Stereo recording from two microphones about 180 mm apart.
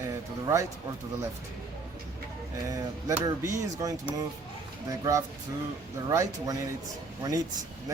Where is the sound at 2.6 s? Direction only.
20° right (ahead or behind).